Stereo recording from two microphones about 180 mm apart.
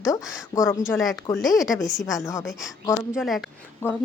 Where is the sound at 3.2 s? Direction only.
Centre (ahead or behind).